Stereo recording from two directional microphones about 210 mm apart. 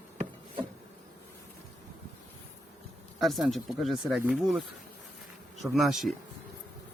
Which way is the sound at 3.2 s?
Centre (ahead or behind).